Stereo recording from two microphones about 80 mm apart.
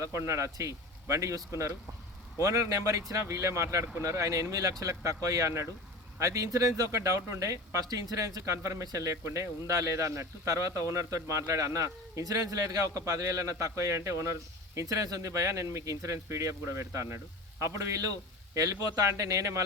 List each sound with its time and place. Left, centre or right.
0.0 s speech: right